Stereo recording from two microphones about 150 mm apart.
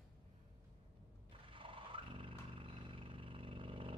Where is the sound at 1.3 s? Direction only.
35° right (ahead or behind).